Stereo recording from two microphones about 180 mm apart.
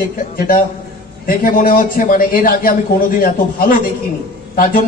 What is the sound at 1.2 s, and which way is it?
Speech, 55° left (ahead or behind).